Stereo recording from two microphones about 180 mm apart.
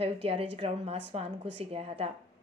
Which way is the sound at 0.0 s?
30° right (ahead or behind).